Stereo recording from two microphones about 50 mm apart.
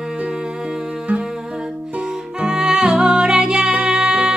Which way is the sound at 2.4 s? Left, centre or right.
Centre.